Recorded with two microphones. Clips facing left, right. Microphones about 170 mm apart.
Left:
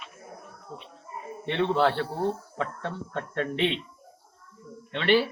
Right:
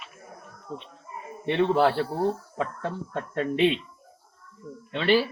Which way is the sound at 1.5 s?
10° right (ahead or behind).